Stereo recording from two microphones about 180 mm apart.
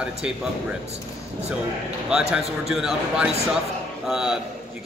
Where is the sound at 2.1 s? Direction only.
5° right (ahead or behind).